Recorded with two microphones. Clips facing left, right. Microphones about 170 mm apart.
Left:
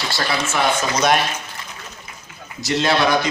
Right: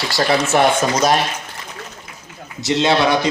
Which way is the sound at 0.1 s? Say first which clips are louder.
Right 9 dB; 40° right (ahead or behind).